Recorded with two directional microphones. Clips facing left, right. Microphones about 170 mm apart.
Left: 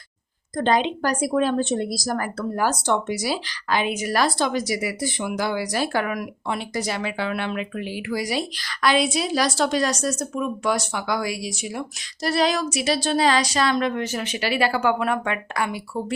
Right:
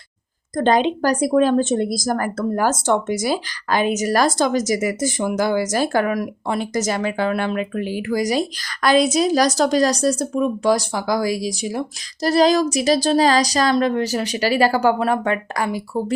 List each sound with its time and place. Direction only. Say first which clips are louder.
0.5 s speech: right 4 dB; 45° right (ahead or behind)